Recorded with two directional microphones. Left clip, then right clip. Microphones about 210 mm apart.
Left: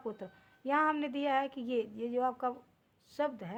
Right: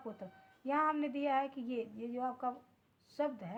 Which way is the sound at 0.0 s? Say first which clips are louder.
Left 5 dB; 45° left (ahead or behind).